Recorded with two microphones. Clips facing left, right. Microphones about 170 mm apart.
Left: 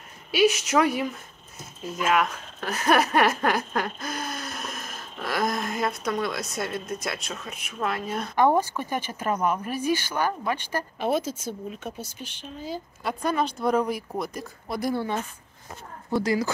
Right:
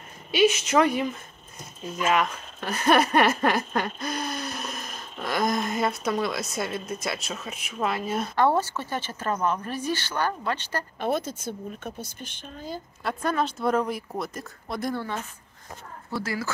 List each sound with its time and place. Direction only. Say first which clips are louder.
0.3 s speech: even; centre (ahead or behind)
8.4 s speech: left 2 dB; 15° left (ahead or behind)
16.1 s speech: left 6 dB; 15° left (ahead or behind)